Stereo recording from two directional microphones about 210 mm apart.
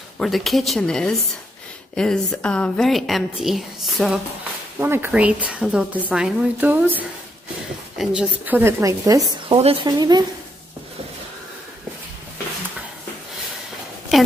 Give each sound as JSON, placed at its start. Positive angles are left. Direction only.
{"t": 0.2, "sound": "a woman's voice", "side_deg": 0}